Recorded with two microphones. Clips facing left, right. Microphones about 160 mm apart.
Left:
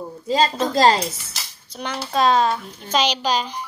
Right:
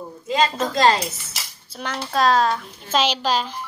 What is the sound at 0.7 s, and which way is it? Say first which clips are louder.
Speech: left 1 dB; 35° left (ahead or behind).